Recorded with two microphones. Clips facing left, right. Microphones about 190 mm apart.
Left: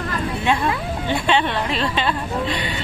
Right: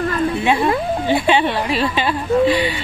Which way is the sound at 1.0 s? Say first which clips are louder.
Right 3 dB; 10° right (ahead or behind).